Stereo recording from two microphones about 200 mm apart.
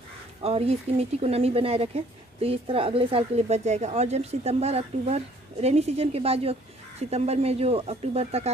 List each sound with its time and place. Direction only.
0.4 s speech: 30° right (ahead or behind)